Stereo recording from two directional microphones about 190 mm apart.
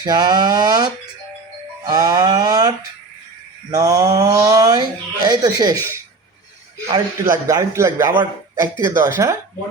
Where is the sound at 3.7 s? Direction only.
20° right (ahead or behind).